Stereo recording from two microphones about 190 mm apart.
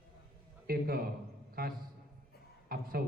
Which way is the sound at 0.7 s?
55° right (ahead or behind).